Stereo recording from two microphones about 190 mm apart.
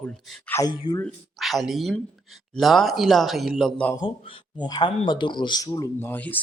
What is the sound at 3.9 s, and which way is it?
Speech, 25° left (ahead or behind).